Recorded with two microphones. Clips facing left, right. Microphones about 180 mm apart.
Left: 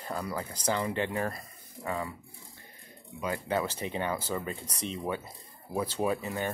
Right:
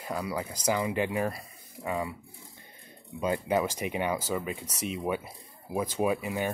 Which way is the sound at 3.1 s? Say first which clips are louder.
Right 4 dB; 20° right (ahead or behind).